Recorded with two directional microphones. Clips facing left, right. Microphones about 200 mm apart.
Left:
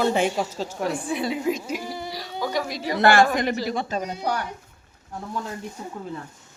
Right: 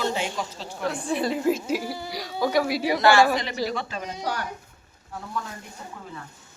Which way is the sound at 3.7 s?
45° left (ahead or behind).